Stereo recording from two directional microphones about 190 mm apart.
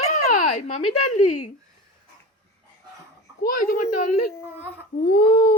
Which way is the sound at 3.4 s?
50° left (ahead or behind).